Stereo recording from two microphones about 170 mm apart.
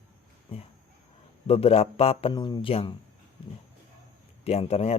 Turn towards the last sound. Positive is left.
turn(degrees=35)  # may be behind; listen again after turning